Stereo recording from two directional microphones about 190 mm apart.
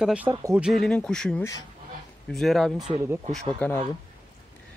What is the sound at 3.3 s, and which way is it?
Speech, 10° left (ahead or behind).